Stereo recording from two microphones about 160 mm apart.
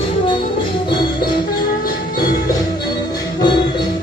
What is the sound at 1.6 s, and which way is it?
Music, 65° left (ahead or behind).